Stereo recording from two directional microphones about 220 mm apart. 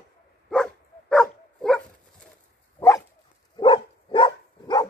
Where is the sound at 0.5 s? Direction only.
5° left (ahead or behind).